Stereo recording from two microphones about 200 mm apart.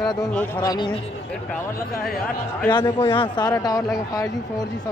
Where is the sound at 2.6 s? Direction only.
20° left (ahead or behind).